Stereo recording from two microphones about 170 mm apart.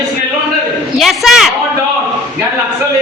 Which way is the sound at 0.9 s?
Centre (ahead or behind).